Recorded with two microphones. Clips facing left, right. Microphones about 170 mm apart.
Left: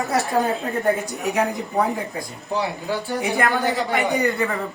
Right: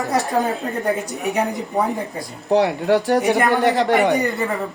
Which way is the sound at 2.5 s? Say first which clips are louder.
Right 9 dB; 75° right (ahead or behind).